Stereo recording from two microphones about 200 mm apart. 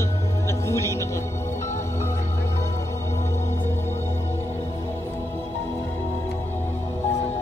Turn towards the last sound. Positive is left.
turn(degrees=10)  # may be behind; listen again after turning